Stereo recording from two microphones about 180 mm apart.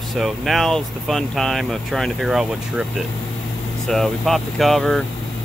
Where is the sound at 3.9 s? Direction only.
Centre (ahead or behind).